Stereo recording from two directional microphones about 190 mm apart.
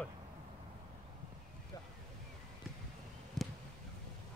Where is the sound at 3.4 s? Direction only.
Centre (ahead or behind).